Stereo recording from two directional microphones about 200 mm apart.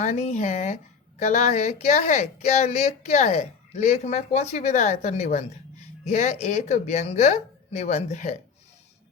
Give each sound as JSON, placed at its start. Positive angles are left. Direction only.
{"t": 0.0, "sound": "speech", "side_deg": 35}